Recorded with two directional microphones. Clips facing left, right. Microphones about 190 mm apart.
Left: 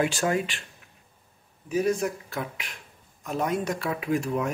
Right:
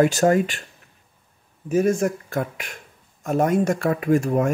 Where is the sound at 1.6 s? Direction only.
50° right (ahead or behind).